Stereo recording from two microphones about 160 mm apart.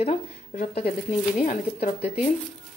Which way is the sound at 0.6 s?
40° left (ahead or behind).